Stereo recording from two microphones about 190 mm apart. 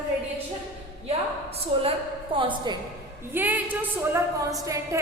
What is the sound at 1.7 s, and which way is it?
A woman's voice, 30° right (ahead or behind).